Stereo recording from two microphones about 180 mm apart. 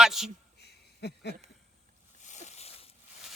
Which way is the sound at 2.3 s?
40° left (ahead or behind).